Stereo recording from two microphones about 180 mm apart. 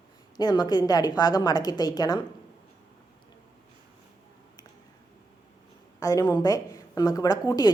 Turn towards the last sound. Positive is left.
turn(degrees=20)  # may be behind; listen again after turning